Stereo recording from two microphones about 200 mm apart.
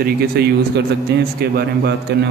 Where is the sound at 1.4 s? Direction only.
50° right (ahead or behind).